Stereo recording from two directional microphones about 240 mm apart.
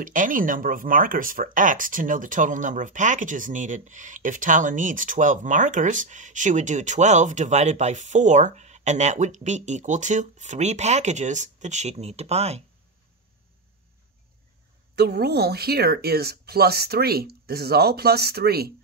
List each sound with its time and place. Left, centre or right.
0.0 s speech: right
15.0 s speech: right